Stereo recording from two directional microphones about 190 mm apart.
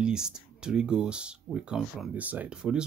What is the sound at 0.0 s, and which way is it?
Speech, 5° right (ahead or behind).